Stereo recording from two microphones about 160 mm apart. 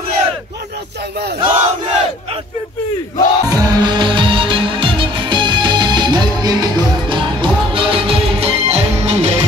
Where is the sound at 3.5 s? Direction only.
25° right (ahead or behind).